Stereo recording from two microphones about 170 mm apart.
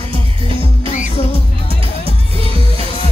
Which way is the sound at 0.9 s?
45° left (ahead or behind).